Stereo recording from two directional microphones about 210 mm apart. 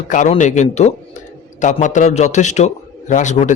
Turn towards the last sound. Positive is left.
turn(degrees=35)  # may be behind; listen again after turning